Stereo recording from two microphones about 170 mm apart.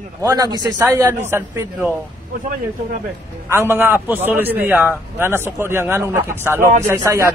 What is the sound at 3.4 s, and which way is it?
A man's voice, 15° right (ahead or behind).